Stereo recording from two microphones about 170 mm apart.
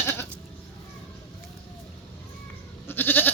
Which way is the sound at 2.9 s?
10° left (ahead or behind).